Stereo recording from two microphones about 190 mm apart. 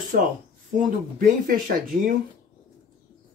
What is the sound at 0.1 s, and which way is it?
Speech, 45° right (ahead or behind).